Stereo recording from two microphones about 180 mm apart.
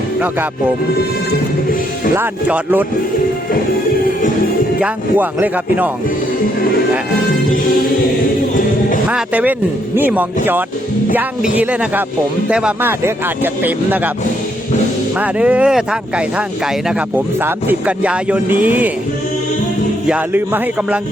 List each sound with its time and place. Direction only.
2.1 s speech: 10° right (ahead or behind)
4.8 s speech: 10° right (ahead or behind)
9.0 s speech: 10° right (ahead or behind)
15.2 s speech: 5° right (ahead or behind)
20.1 s speech: 10° right (ahead or behind)